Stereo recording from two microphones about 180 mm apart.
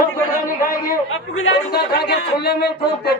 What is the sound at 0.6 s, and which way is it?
Speech, 50° left (ahead or behind).